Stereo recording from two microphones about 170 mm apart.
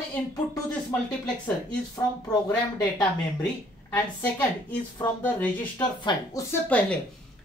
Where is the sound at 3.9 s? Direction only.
10° left (ahead or behind).